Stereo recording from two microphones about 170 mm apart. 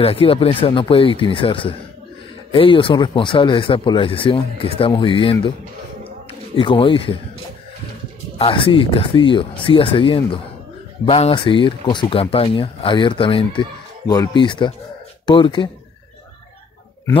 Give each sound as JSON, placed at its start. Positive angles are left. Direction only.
{"t": 0.0, "sound": "speech", "side_deg": 35}
{"t": 6.5, "sound": "speech", "side_deg": 30}
{"t": 8.4, "sound": "speech", "side_deg": 30}